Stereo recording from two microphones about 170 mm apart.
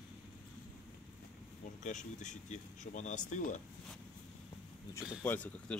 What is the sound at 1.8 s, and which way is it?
Speech, 45° left (ahead or behind).